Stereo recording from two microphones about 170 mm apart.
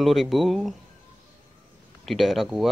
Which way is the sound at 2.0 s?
Centre (ahead or behind).